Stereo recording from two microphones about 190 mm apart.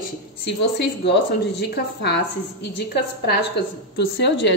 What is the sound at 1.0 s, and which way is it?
A woman's voice, 60° left (ahead or behind).